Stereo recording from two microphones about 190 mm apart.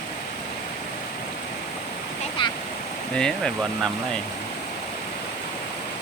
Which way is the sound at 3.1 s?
5° left (ahead or behind).